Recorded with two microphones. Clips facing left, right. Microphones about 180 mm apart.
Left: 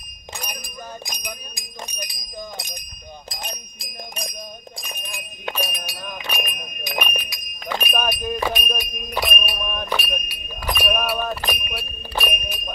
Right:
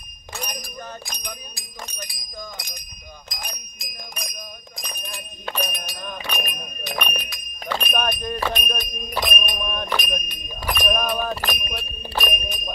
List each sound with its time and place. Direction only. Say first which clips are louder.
0.4 s speech: right 2 dB; 10° left (ahead or behind)
2.5 s music: left 4 dB; 20° left (ahead or behind)
5.5 s speech: even; centre (ahead or behind)